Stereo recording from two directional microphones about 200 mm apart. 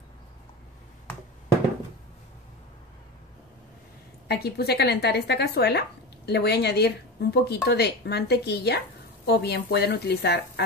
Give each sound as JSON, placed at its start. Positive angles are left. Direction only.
{"t": 4.3, "sound": "a woman's voice", "side_deg": 55}